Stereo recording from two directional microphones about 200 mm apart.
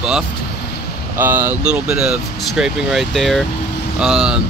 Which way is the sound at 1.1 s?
10° right (ahead or behind).